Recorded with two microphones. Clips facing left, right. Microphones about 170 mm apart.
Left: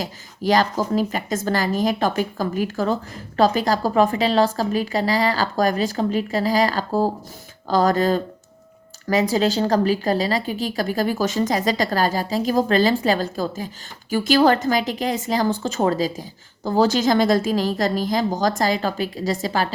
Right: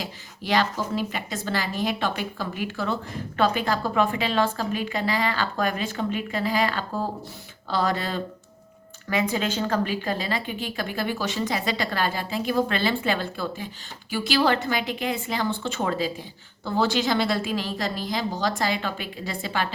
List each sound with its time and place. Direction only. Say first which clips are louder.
0.0 s a woman's voice: left 9 dB; 40° left (ahead or behind)